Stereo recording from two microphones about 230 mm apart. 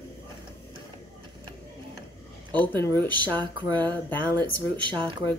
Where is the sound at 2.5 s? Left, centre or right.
Centre.